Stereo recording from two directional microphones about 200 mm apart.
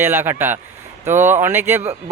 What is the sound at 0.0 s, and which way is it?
Speech, 10° right (ahead or behind).